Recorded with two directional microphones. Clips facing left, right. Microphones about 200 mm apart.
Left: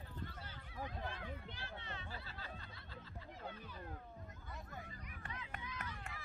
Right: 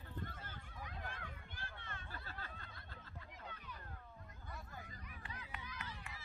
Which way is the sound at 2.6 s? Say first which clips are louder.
Left 2 dB; 50° right (ahead or behind).